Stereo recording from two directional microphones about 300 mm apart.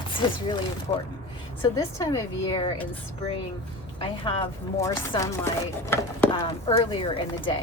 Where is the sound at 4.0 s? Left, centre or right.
Centre.